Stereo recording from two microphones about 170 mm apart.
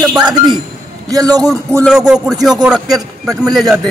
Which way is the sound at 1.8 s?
5° right (ahead or behind).